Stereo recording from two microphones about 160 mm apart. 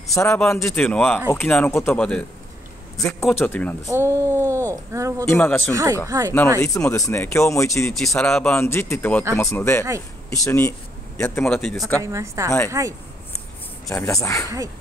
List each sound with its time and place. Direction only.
0.1 s speech: 20° left (ahead or behind)
0.6 s speech: 5° left (ahead or behind)
3.9 s speech: 15° right (ahead or behind)
5.2 s speech: 15° left (ahead or behind)
5.7 s speech: 20° right (ahead or behind)
6.6 s speech: 20° left (ahead or behind)
8.2 s speech: 5° left (ahead or behind)
11.5 s speech: 5° left (ahead or behind)
12.0 s speech: 20° right (ahead or behind)
13.9 s speech: 20° left (ahead or behind)